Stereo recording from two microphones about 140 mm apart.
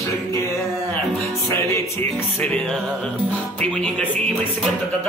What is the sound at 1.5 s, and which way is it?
Music, 20° left (ahead or behind).